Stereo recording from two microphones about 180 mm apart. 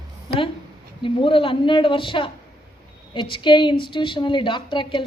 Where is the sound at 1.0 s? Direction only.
30° left (ahead or behind).